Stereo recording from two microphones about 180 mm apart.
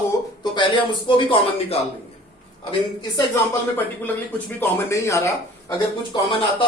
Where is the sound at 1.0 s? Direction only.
30° left (ahead or behind).